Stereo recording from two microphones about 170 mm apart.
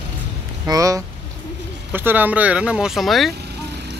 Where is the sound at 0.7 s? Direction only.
20° right (ahead or behind).